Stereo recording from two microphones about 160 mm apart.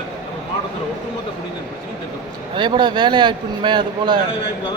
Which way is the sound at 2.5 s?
30° right (ahead or behind).